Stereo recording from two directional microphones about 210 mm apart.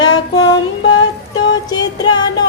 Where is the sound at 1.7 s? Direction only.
20° left (ahead or behind).